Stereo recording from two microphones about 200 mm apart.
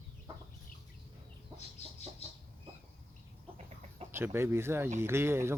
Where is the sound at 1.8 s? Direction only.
35° left (ahead or behind).